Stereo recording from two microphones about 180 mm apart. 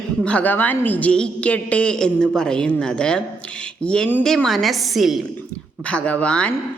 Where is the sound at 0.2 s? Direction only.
5° left (ahead or behind).